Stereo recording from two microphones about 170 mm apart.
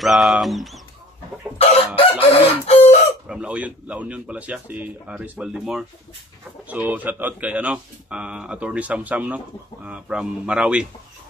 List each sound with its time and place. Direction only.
0.0 s speech: centre (ahead or behind)
2.0 s chicken: 35° left (ahead or behind)
3.3 s speech: 5° right (ahead or behind)